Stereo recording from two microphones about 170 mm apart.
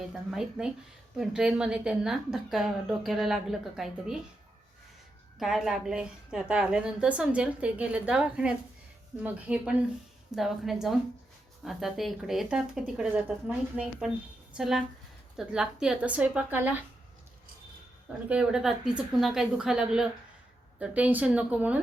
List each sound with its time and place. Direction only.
0.0 s a woman's voice: 5° right (ahead or behind)
5.4 s a woman's voice: centre (ahead or behind)
18.3 s a woman's voice: 5° right (ahead or behind)